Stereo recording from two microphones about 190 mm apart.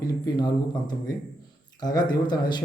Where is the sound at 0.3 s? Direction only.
20° left (ahead or behind).